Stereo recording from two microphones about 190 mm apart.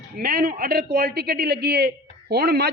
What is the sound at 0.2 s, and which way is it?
A man's voice, 50° right (ahead or behind).